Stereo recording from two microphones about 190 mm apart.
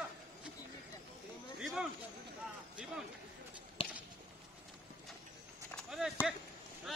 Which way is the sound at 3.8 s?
30° left (ahead or behind).